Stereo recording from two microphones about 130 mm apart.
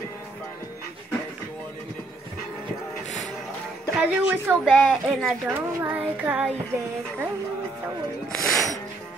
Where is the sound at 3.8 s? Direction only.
15° right (ahead or behind).